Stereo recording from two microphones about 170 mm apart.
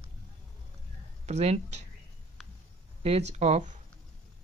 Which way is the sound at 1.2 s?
40° right (ahead or behind).